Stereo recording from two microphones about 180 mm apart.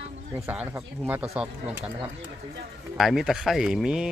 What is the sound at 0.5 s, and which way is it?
Speech, 10° right (ahead or behind).